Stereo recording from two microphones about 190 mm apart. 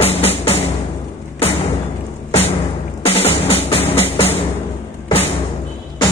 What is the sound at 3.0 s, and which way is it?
Music, 30° left (ahead or behind).